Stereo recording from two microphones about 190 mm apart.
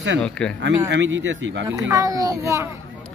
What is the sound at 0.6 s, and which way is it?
Speech, 70° right (ahead or behind).